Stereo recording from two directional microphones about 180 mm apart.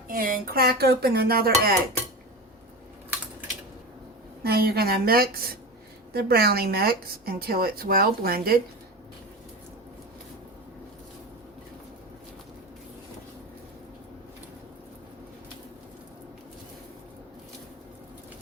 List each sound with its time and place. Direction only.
0.1 s speech: 55° right (ahead or behind)
4.4 s speech: 60° right (ahead or behind)